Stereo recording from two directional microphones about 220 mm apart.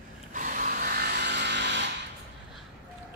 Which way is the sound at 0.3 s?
35° right (ahead or behind).